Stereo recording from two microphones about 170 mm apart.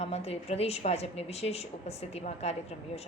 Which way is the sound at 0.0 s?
40° left (ahead or behind).